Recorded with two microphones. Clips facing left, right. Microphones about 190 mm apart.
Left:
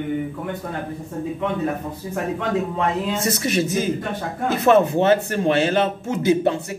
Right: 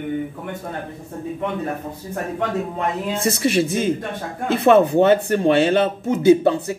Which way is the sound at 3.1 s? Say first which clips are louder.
Right 3 dB; 30° right (ahead or behind).